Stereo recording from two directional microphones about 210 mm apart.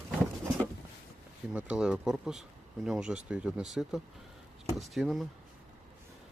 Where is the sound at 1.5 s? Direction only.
5° right (ahead or behind).